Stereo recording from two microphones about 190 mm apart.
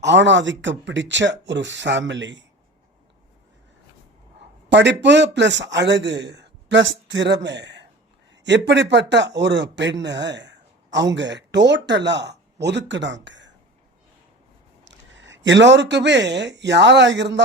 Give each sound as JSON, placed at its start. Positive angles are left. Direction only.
{"t": 0.0, "sound": "a man's voice", "side_deg": -70}
{"t": 4.7, "sound": "a man's voice", "side_deg": -70}
{"t": 14.8, "sound": "speech", "side_deg": -75}